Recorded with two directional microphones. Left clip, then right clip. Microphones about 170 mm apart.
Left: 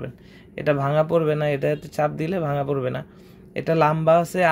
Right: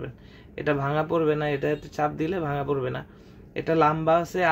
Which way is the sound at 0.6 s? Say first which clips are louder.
Left 5 dB; 45° left (ahead or behind).